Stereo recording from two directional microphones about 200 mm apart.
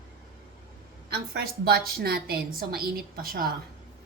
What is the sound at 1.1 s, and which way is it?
A woman's voice, 50° right (ahead or behind).